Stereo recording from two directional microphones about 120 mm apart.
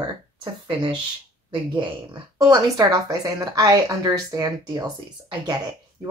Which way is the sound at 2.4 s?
35° right (ahead or behind).